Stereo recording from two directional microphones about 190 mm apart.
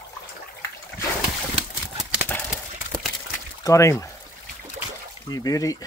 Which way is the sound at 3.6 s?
15° left (ahead or behind).